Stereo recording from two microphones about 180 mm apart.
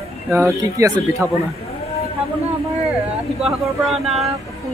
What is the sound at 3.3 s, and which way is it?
Speech, centre (ahead or behind).